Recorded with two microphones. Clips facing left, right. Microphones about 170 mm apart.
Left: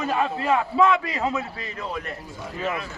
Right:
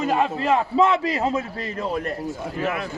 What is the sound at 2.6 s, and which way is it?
Speech, 60° right (ahead or behind).